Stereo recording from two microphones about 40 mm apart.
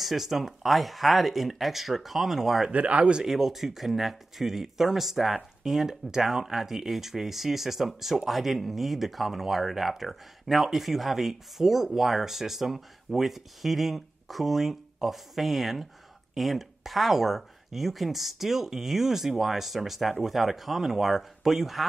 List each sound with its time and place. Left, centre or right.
0.0 s speech: centre
2.7 s speech: right
3.3 s speech: centre